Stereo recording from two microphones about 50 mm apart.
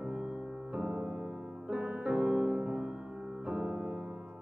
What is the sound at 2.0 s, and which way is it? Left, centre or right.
Music, centre.